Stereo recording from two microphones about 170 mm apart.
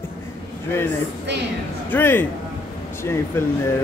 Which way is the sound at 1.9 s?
10° left (ahead or behind).